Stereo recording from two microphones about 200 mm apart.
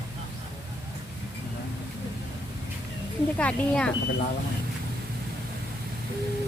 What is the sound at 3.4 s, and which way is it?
Speech, 5° left (ahead or behind).